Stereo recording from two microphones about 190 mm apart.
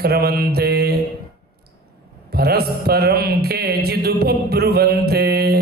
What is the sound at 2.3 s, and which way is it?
Mantra, 55° right (ahead or behind).